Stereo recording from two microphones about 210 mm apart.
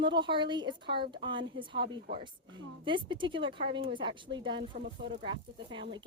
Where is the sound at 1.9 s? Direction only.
45° right (ahead or behind).